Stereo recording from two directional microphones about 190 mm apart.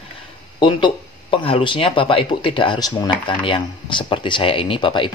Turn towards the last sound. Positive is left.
turn(degrees=25)  # may be behind; listen again after turning